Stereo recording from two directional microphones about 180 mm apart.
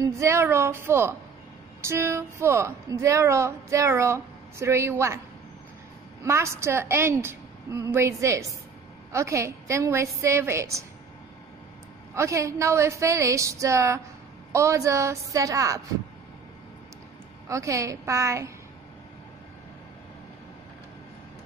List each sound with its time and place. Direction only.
0.0 s speech: 15° right (ahead or behind)
6.2 s speech: 15° right (ahead or behind)
12.2 s speech: 15° right (ahead or behind)
17.5 s speech: 15° right (ahead or behind)